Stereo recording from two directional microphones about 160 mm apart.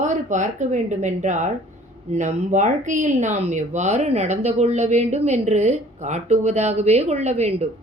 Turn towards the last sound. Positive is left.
turn(degrees=-45)  # may be behind; listen again after turning